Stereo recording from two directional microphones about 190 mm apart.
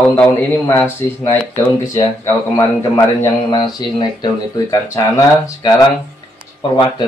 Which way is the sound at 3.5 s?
20° left (ahead or behind).